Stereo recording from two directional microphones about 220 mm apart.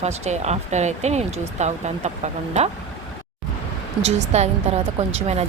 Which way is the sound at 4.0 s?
30° right (ahead or behind).